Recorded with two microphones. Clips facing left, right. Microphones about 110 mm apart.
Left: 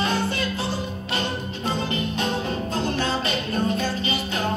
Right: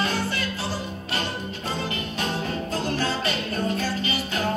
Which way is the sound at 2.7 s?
25° left (ahead or behind).